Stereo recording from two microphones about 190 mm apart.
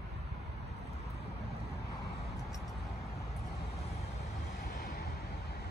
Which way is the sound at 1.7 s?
60° left (ahead or behind).